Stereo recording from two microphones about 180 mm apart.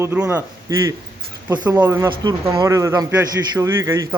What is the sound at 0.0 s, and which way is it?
Speech, 10° right (ahead or behind).